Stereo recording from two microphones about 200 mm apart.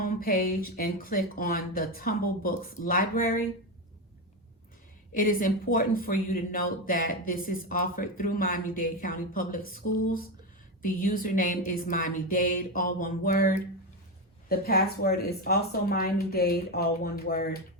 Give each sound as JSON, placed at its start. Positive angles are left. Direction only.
{"t": 0.0, "sound": "speech", "side_deg": 45}
{"t": 5.1, "sound": "speech", "side_deg": 45}
{"t": 14.5, "sound": "speech", "side_deg": 50}